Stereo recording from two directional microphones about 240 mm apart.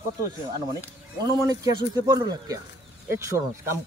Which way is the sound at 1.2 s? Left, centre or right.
Centre.